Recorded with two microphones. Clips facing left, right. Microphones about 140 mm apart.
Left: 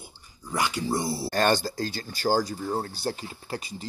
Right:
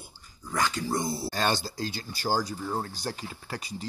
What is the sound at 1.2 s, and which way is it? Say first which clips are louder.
Speech: left 5 dB; 55° left (ahead or behind).